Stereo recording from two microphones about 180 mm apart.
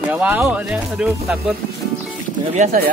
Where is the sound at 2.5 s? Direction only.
45° right (ahead or behind).